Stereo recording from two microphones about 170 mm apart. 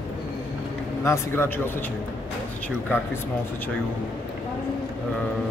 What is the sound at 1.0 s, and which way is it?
Speech, 15° left (ahead or behind).